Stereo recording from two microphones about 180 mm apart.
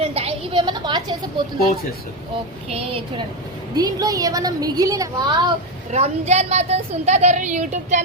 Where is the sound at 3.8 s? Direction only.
20° right (ahead or behind).